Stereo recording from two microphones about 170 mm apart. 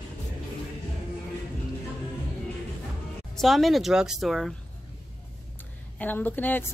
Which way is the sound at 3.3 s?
Centre (ahead or behind).